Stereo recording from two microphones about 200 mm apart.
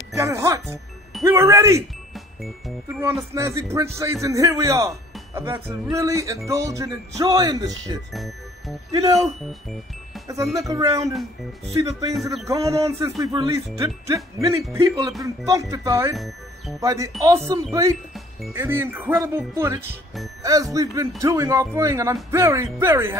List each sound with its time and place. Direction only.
0.1 s speech: 15° right (ahead or behind)
2.9 s speech: 10° right (ahead or behind)
8.1 s speech: centre (ahead or behind)
8.9 s speech: 20° right (ahead or behind)
9.5 s music: centre (ahead or behind)
10.2 s speech: 15° right (ahead or behind)